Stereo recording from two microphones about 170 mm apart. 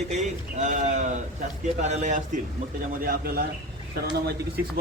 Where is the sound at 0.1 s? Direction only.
45° right (ahead or behind).